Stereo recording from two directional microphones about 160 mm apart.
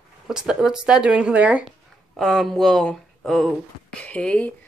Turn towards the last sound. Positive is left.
turn(degrees=5)  # may be behind; listen again after turning